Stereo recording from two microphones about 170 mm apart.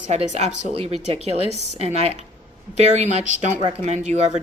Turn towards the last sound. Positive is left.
turn(degrees=-40)  # may be behind; listen again after turning